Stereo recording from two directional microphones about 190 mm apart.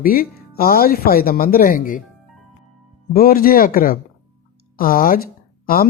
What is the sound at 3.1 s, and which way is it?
Speech, 50° left (ahead or behind).